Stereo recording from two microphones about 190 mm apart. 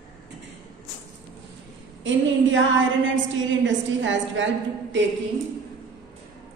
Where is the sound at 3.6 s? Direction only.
75° right (ahead or behind).